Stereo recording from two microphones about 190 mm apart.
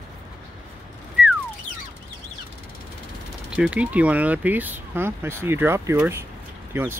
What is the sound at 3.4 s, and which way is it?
Speech, 5° right (ahead or behind).